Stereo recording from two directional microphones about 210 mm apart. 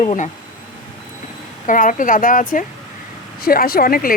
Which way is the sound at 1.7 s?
40° left (ahead or behind).